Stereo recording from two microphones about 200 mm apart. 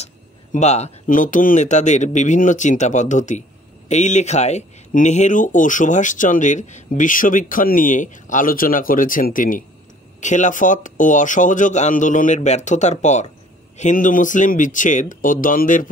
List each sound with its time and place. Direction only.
0.0 s speech: 35° left (ahead or behind)